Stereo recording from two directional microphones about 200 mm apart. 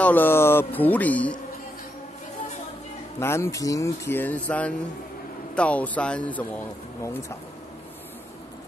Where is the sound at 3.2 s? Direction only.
15° left (ahead or behind).